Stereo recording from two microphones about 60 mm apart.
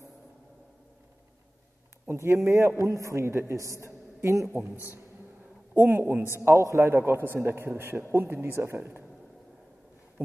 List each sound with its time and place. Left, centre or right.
2.0 s a woman's voice: right
5.8 s a man's voice: right